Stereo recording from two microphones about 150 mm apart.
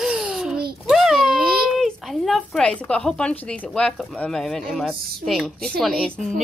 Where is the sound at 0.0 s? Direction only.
5° right (ahead or behind).